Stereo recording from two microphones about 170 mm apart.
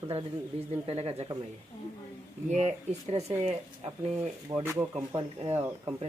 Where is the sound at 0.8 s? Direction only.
35° right (ahead or behind).